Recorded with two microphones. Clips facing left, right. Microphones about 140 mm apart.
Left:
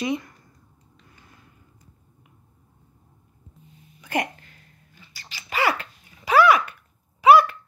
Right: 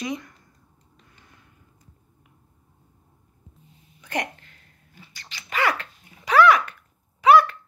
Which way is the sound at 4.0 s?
5° left (ahead or behind).